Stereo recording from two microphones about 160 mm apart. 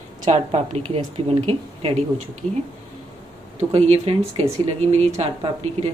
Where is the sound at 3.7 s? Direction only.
40° right (ahead or behind).